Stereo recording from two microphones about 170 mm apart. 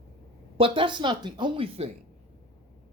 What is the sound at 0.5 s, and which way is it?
Speech, 30° right (ahead or behind).